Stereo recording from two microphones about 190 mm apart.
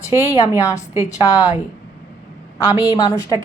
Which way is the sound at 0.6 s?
15° left (ahead or behind).